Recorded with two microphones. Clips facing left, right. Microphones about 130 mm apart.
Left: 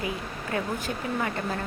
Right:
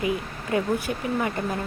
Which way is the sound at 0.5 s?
20° right (ahead or behind).